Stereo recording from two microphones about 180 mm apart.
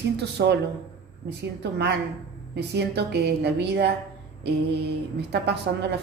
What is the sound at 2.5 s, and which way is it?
A woman's voice, 70° right (ahead or behind).